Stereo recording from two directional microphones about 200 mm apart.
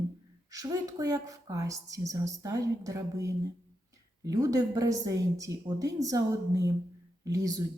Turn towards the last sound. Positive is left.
turn(degrees=-15)  # may be behind; listen again after turning